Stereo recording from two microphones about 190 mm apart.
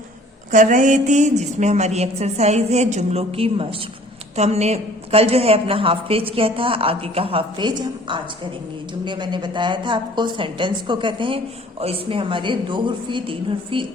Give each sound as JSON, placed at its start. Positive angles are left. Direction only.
{"t": 0.5, "sound": "a woman's voice", "side_deg": -40}